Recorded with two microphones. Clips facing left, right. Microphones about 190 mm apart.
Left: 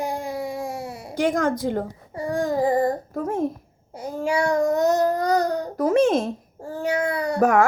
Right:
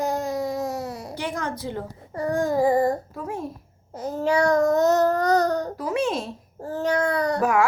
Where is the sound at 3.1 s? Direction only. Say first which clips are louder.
Left 7 dB; 45° left (ahead or behind).